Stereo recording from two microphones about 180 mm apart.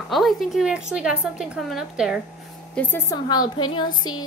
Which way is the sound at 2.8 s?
10° left (ahead or behind).